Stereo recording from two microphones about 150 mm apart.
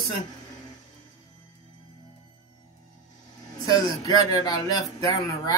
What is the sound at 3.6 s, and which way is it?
Speech, 25° left (ahead or behind).